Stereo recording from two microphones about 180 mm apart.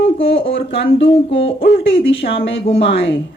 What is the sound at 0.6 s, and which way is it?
Speech, 75° left (ahead or behind).